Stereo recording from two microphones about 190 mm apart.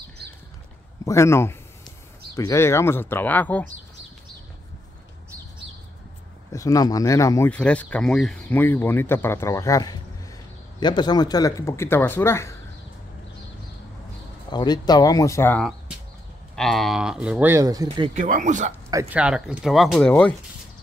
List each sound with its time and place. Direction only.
1.0 s speech: 15° left (ahead or behind)
6.5 s speech: 15° left (ahead or behind)
14.5 s speech: 20° left (ahead or behind)
16.5 s speech: centre (ahead or behind); by 18.1 s 25° right (ahead or behind)
18.1 s speech: 40° right (ahead or behind)
18.9 s speech: 15° right (ahead or behind)
19.1 s speech: 5° right (ahead or behind)